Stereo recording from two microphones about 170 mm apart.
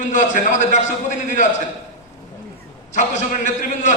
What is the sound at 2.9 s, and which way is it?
A man's voice, 45° left (ahead or behind).